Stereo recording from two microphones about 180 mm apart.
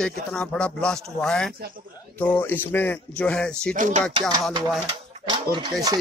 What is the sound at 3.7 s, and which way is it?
Speech, 45° right (ahead or behind).